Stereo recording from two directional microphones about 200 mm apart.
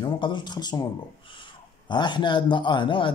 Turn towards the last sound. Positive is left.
turn(degrees=25)  # may be behind; listen again after turning